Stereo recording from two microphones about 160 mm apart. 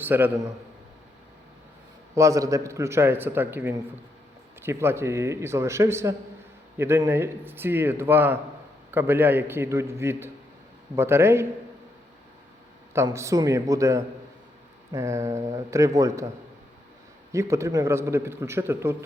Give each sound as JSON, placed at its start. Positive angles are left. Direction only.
{"t": 0.0, "sound": "a man's voice", "side_deg": -15}
{"t": 2.1, "sound": "a man's voice", "side_deg": -20}
{"t": 13.1, "sound": "speech", "side_deg": -20}
{"t": 17.3, "sound": "a man's voice", "side_deg": -20}